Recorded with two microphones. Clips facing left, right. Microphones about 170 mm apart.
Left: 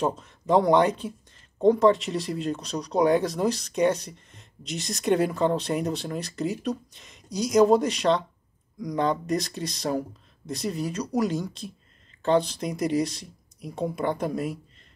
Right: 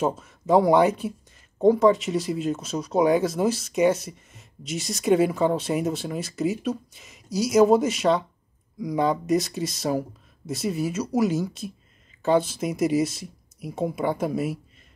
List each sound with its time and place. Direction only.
0.0 s speech: 5° right (ahead or behind)